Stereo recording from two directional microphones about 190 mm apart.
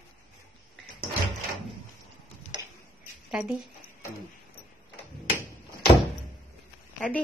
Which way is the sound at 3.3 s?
5° right (ahead or behind).